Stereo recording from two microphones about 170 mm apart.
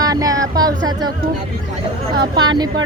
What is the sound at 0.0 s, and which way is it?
Speech, 20° right (ahead or behind).